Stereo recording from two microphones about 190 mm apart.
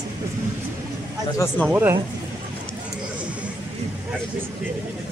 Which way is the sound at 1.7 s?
10° right (ahead or behind).